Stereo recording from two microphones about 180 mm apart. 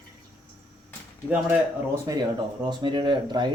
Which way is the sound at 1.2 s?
10° right (ahead or behind).